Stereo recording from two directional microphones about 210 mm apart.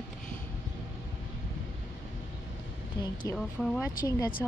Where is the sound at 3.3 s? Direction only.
Centre (ahead or behind).